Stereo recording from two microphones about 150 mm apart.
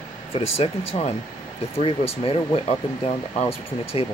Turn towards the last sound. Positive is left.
turn(degrees=45)  # may be behind; listen again after turning